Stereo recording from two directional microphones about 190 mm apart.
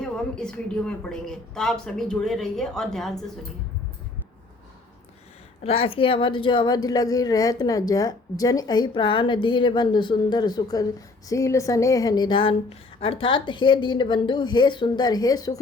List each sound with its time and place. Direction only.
0.0 s a woman's voice: 5° left (ahead or behind)
5.6 s a woman's voice: 30° left (ahead or behind)